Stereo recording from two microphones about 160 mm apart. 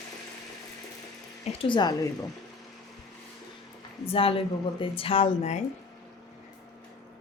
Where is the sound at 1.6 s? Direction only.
30° left (ahead or behind).